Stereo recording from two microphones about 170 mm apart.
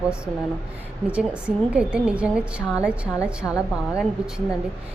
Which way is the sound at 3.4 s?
10° left (ahead or behind).